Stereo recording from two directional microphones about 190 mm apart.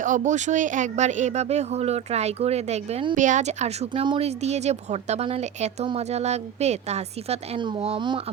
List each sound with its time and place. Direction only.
0.0 s speech: 40° right (ahead or behind)
3.2 s speech: 40° right (ahead or behind)